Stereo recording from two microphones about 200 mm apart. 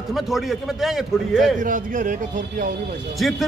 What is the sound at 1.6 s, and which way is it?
Speech, 40° right (ahead or behind).